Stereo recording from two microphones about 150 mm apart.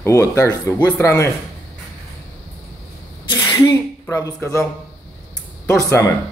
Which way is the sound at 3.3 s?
20° left (ahead or behind).